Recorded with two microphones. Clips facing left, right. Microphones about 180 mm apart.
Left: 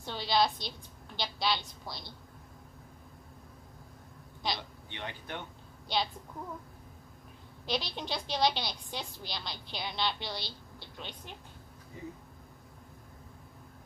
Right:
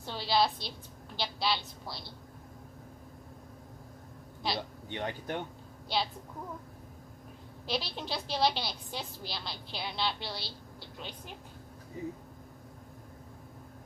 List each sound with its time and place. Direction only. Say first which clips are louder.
0.0 s a woman's voice: even; 5° right (ahead or behind)
4.6 s speech: right 7 dB; 45° right (ahead or behind)
5.9 s a woman's voice: even; 5° right (ahead or behind)
7.6 s a woman's voice: even; 5° right (ahead or behind)